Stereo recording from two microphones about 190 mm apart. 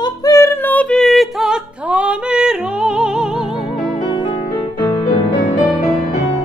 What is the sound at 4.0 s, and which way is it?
Music, 25° left (ahead or behind).